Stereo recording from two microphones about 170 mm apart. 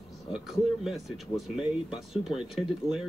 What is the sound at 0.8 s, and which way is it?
Speech, centre (ahead or behind).